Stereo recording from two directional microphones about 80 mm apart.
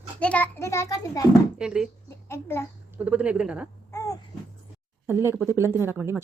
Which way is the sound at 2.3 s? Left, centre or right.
Left.